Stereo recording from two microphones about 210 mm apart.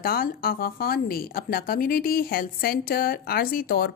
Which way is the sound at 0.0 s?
45° left (ahead or behind).